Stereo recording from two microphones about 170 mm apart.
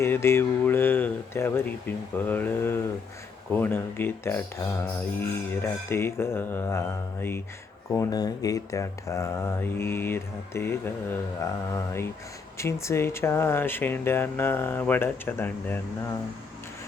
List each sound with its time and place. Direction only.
0.0 s speech: 15° left (ahead or behind)